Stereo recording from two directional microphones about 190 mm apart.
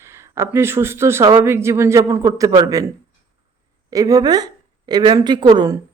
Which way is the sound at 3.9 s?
20° right (ahead or behind).